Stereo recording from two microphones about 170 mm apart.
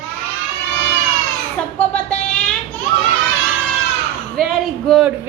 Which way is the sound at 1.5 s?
5° left (ahead or behind).